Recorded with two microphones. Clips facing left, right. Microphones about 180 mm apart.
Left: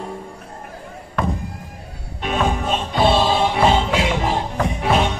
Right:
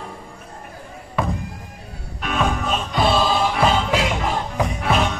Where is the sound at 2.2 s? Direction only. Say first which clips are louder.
Left 2 dB; 25° left (ahead or behind).